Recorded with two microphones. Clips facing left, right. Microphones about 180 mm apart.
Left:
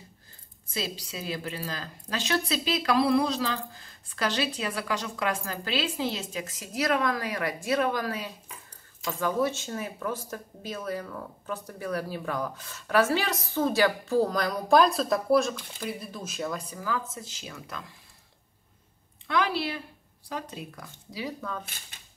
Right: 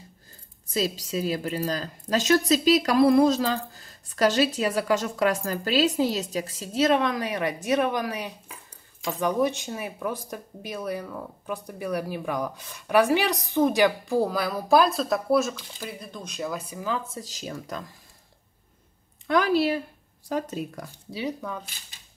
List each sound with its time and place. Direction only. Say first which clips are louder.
0.7 s a woman's voice: right 7 dB; 40° right (ahead or behind); by 16.8 s 10° right (ahead or behind)
16.8 s speech: right 2 dB; 20° right (ahead or behind)
17.2 s a woman's voice: right 6 dB; 40° right (ahead or behind)
19.2 s a woman's voice: right 6 dB; 45° right (ahead or behind)
21.1 s speech: right 3 dB; 20° right (ahead or behind)